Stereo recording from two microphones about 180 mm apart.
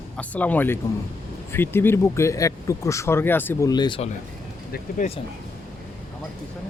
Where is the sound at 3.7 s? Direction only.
25° left (ahead or behind).